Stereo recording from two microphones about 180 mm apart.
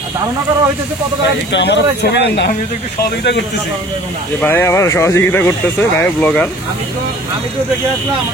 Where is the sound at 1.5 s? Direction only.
70° left (ahead or behind).